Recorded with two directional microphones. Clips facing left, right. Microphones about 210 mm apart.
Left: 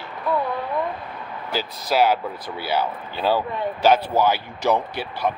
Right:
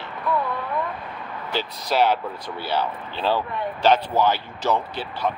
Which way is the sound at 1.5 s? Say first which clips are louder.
Left 1 dB; 5° left (ahead or behind).